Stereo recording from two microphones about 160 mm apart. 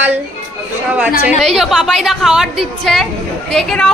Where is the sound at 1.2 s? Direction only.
Centre (ahead or behind).